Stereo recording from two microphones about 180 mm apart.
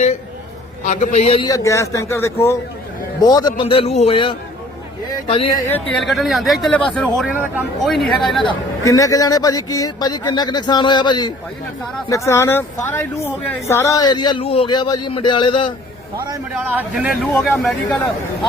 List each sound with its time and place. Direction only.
0.9 s a man's voice: 40° left (ahead or behind)
1.5 s speech: 15° left (ahead or behind)
5.9 s speech: centre (ahead or behind)
7.3 s speech: 10° right (ahead or behind)
7.9 s speech: centre (ahead or behind)
8.4 s speech: 20° left (ahead or behind)
16.1 s a man's voice: 20° right (ahead or behind)
16.6 s speech: 10° right (ahead or behind)